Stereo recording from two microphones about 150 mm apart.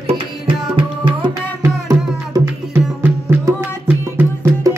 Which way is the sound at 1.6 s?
20° right (ahead or behind).